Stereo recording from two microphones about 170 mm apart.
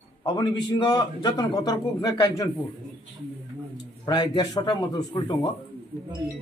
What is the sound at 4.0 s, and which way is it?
A man's voice, 25° left (ahead or behind).